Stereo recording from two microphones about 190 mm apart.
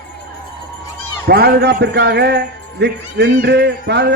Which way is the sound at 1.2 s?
55° right (ahead or behind).